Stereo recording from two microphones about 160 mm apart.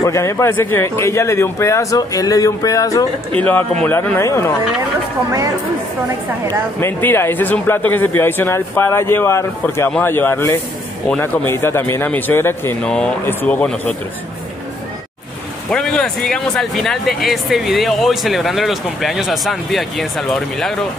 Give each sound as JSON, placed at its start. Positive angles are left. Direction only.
{"t": 0.0, "sound": "a man's voice", "side_deg": 20}
{"t": 3.3, "sound": "speech", "side_deg": 10}
{"t": 6.8, "sound": "speech", "side_deg": 15}
{"t": 15.7, "sound": "speech", "side_deg": 5}